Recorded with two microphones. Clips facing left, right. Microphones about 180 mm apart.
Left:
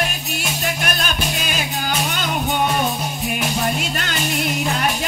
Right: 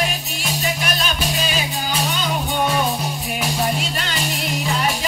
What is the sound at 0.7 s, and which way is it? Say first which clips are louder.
Music: even; 55° left (ahead or behind).